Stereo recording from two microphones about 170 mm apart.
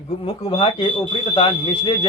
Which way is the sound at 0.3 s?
30° left (ahead or behind).